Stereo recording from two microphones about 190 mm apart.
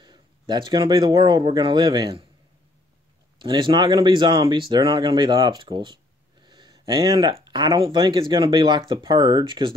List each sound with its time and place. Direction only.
0.0 s speech: 25° right (ahead or behind)
3.3 s speech: 25° right (ahead or behind)